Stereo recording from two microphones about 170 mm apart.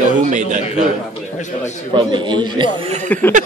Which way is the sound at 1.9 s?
25° right (ahead or behind).